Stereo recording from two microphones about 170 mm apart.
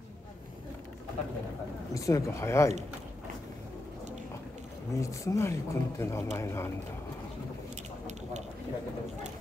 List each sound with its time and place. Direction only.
2.0 s speech: 20° left (ahead or behind)
5.0 s speech: 15° left (ahead or behind)